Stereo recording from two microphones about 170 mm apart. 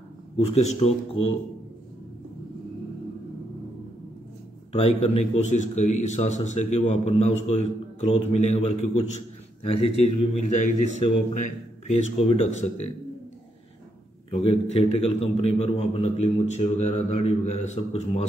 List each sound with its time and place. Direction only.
0.4 s speech: 40° left (ahead or behind)
4.7 s a man's voice: 35° left (ahead or behind)
14.3 s speech: 35° left (ahead or behind)